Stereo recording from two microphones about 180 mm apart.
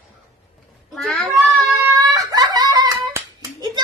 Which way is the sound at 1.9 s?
20° right (ahead or behind).